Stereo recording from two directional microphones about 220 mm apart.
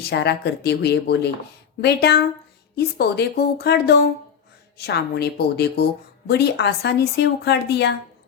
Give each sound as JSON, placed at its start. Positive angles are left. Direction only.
{"t": 0.0, "sound": "speech", "side_deg": 50}